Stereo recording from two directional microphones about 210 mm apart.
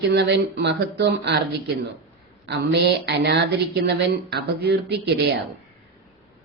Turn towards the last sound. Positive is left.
turn(degrees=-50)  # may be behind; listen again after turning